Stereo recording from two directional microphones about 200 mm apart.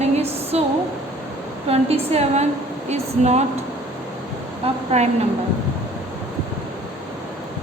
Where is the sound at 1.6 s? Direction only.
30° right (ahead or behind).